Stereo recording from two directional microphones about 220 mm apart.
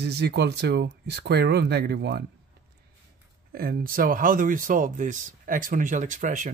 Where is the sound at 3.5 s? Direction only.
40° right (ahead or behind).